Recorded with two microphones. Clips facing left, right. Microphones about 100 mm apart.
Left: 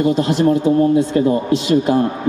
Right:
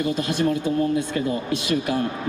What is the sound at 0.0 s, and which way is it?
A man's voice, 30° left (ahead or behind).